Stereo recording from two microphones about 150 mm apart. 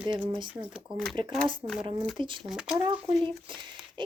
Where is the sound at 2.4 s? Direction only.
5° right (ahead or behind).